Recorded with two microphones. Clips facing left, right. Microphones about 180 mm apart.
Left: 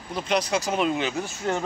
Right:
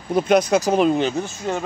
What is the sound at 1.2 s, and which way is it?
Speech, 15° right (ahead or behind).